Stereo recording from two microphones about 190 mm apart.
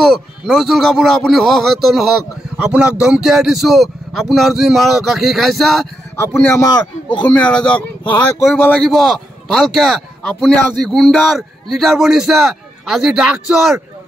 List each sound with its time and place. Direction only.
0.0 s a man's voice: centre (ahead or behind)
6.1 s a man's voice: 15° left (ahead or behind)
7.3 s a man's voice: 5° left (ahead or behind)